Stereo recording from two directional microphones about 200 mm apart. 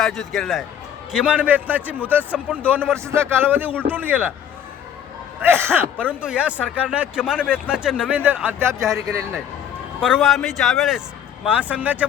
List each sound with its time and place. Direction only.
0.0 s a man's voice: centre (ahead or behind)
5.4 s a man's voice: 10° right (ahead or behind)